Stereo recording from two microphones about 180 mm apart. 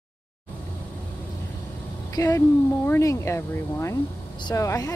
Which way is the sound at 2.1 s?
20° left (ahead or behind).